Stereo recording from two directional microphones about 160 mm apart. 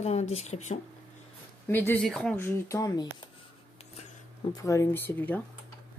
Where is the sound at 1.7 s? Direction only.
15° left (ahead or behind).